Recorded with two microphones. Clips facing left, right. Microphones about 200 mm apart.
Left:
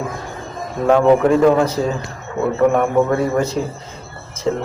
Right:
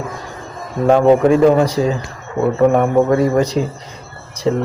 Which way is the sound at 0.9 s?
30° right (ahead or behind).